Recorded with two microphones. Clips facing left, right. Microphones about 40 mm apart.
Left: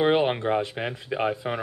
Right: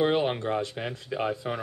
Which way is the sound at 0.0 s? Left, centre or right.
Centre.